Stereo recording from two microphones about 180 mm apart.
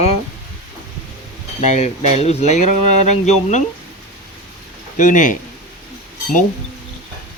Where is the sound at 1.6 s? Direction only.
40° left (ahead or behind).